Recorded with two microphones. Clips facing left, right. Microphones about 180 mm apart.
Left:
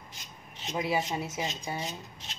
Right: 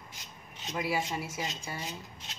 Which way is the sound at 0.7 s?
20° left (ahead or behind).